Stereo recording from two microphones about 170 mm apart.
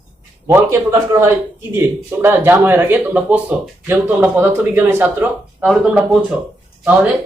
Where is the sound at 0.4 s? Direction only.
15° right (ahead or behind).